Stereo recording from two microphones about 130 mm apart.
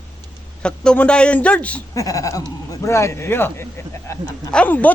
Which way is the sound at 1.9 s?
25° left (ahead or behind).